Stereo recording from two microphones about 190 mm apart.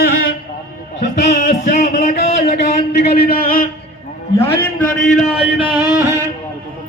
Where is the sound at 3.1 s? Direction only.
55° left (ahead or behind).